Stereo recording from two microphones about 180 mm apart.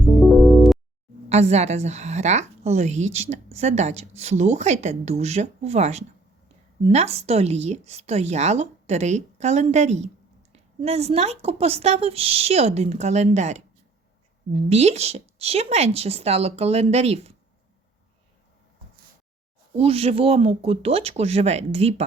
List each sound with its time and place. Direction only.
0.0 s music: centre (ahead or behind)
1.3 s a woman's voice: 35° right (ahead or behind)
19.7 s a woman's voice: 35° right (ahead or behind)